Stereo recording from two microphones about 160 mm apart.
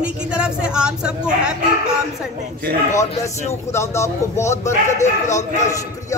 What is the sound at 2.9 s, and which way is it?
Speech, 50° left (ahead or behind).